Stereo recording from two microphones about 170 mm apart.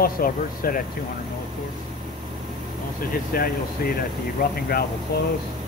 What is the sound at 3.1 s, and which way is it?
Speech, 60° left (ahead or behind).